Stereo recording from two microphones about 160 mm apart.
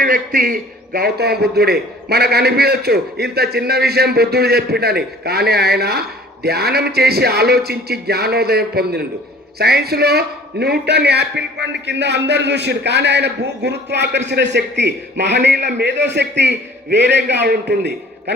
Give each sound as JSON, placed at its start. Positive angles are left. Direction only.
{"t": 0.0, "sound": "a man's voice", "side_deg": -70}